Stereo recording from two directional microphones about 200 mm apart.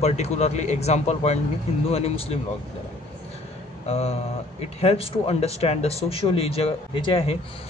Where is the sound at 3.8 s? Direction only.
35° left (ahead or behind).